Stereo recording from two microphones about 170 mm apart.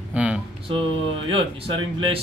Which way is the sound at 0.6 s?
30° right (ahead or behind).